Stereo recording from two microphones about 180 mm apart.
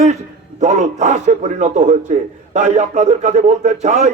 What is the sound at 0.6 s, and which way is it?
A man's voice, 40° right (ahead or behind).